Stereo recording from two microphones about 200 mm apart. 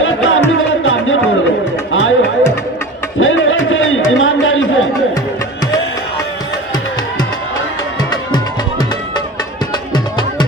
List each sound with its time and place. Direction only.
0.0 s music: 75° left (ahead or behind)
1.9 s chatter: 75° left (ahead or behind)
3.2 s a sound: 75° left (ahead or behind)